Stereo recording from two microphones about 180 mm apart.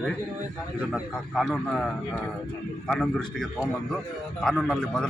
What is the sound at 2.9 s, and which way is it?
A man's voice, centre (ahead or behind).